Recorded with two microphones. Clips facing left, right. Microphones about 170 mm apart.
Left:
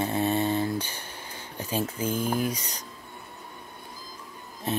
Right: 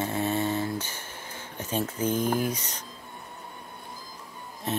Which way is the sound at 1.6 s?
10° left (ahead or behind).